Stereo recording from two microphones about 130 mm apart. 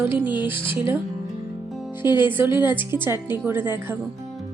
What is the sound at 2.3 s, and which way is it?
Music, 15° right (ahead or behind).